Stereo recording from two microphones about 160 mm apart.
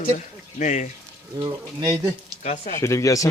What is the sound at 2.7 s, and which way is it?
Speech, 15° left (ahead or behind).